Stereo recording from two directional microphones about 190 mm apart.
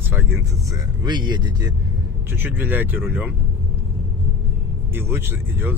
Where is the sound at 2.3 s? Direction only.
10° right (ahead or behind).